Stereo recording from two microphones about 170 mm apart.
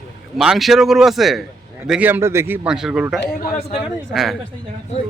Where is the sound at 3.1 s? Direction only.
70° left (ahead or behind).